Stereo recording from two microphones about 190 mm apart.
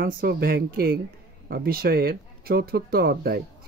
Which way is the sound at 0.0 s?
55° right (ahead or behind).